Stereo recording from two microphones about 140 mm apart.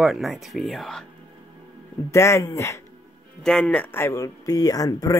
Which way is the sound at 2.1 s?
20° left (ahead or behind).